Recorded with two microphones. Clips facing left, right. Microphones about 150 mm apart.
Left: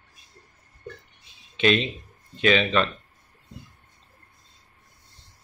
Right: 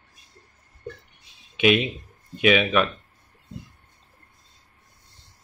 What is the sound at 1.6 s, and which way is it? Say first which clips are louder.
Speech: right 2 dB; 10° right (ahead or behind).